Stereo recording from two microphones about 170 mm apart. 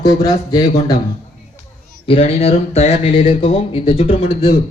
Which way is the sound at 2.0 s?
35° left (ahead or behind).